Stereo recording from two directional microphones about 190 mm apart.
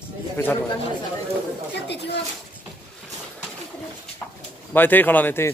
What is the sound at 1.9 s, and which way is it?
Speech, 65° left (ahead or behind).